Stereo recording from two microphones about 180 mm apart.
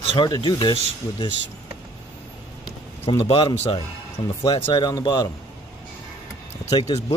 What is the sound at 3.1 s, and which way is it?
Speech, 30° left (ahead or behind).